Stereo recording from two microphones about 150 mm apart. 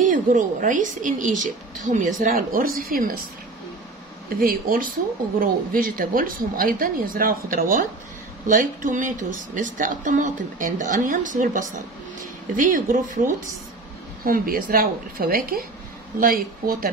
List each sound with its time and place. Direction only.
0.0 s speech: 60° right (ahead or behind); by 3.3 s 75° right (ahead or behind)
4.4 s speech: 70° right (ahead or behind)
14.2 s speech: 75° right (ahead or behind)